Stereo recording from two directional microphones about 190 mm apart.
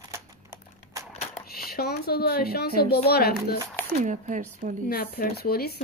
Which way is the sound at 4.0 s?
40° right (ahead or behind).